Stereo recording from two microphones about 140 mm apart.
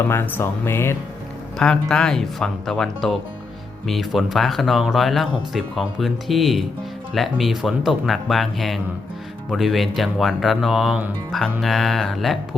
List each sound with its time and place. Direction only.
0.1 s speech: 15° left (ahead or behind)
1.5 s speech: 5° left (ahead or behind)